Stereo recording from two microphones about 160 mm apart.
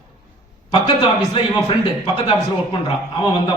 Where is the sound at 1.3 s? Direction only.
30° left (ahead or behind).